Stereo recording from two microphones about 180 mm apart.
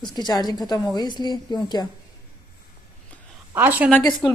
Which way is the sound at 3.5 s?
10° right (ahead or behind).